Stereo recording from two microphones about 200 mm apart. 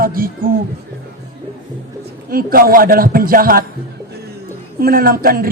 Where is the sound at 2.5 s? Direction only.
45° right (ahead or behind).